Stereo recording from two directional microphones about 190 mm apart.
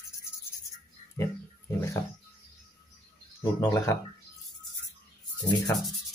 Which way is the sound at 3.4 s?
20° left (ahead or behind).